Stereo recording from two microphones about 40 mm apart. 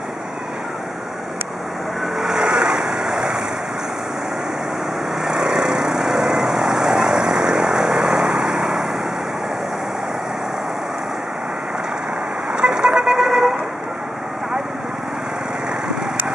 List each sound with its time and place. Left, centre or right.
2.1 s vehicle: centre
5.2 s vehicle: centre
12.5 s vehicle: centre